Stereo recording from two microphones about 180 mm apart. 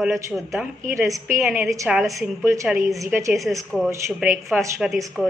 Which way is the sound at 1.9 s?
Centre (ahead or behind).